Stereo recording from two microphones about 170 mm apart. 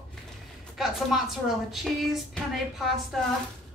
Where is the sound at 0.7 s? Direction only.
Centre (ahead or behind).